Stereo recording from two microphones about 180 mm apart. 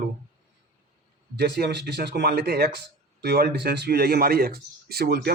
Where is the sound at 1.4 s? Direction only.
65° right (ahead or behind).